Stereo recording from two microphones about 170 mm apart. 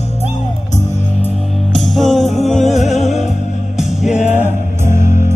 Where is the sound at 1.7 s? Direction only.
Centre (ahead or behind).